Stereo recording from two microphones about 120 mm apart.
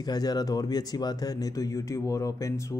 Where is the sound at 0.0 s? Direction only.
35° left (ahead or behind).